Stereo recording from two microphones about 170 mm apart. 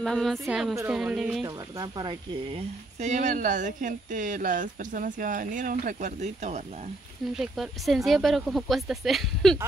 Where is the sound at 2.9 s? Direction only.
45° right (ahead or behind).